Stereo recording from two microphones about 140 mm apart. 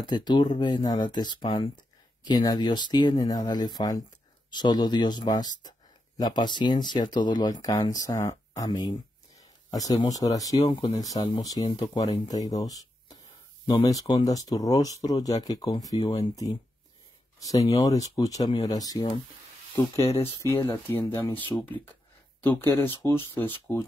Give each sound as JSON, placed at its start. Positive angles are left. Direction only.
{"t": 0.0, "sound": "speech", "side_deg": 30}
{"t": 12.5, "sound": "a sound", "side_deg": 25}
{"t": 13.7, "sound": "speech", "side_deg": 30}
{"t": 17.4, "sound": "speech", "side_deg": 25}